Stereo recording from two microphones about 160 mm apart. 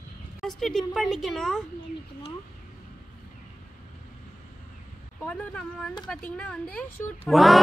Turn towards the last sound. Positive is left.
turn(degrees=0)  # may be behind; listen again after turning